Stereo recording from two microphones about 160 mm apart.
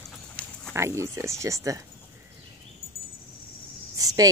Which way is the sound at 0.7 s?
15° right (ahead or behind).